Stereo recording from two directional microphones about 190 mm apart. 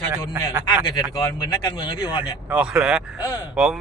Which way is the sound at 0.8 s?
20° left (ahead or behind).